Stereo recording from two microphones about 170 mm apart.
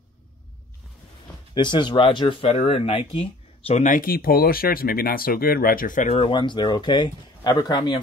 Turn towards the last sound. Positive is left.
turn(degrees=25)  # may be behind; listen again after turning